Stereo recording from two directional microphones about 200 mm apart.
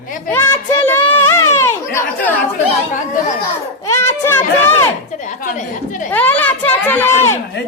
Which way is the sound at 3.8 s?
15° left (ahead or behind).